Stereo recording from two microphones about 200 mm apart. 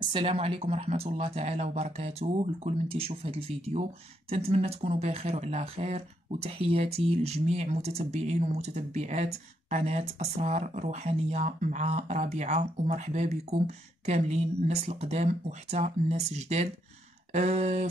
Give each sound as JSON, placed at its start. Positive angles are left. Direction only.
{"t": 0.1, "sound": "speech", "side_deg": -30}